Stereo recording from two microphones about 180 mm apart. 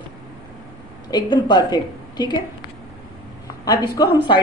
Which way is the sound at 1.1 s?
25° left (ahead or behind).